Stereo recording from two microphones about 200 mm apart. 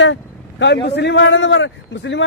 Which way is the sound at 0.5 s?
60° left (ahead or behind).